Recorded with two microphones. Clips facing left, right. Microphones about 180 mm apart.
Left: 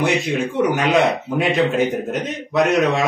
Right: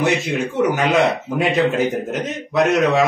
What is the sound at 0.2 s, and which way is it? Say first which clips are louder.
Speech: even; centre (ahead or behind).